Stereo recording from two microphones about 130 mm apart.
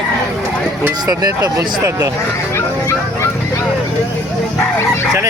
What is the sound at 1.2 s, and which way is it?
Speech, 30° right (ahead or behind).